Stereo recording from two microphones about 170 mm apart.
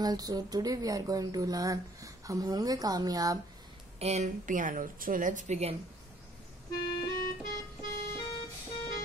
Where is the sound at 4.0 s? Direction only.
40° right (ahead or behind).